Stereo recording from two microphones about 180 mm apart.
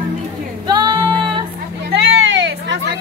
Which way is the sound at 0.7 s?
25° right (ahead or behind).